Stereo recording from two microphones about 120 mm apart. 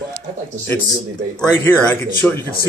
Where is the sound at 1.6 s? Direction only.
15° left (ahead or behind).